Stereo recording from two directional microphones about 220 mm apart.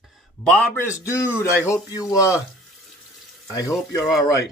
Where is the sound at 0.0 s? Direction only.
Centre (ahead or behind).